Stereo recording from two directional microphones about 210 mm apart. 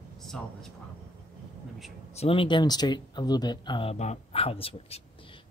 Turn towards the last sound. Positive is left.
turn(degrees=25)  # may be behind; listen again after turning